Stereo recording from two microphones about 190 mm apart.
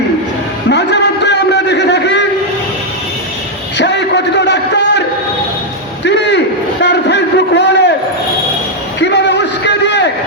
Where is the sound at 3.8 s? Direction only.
65° left (ahead or behind).